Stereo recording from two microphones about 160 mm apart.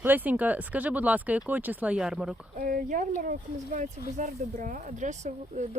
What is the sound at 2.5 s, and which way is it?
Speech, 60° right (ahead or behind).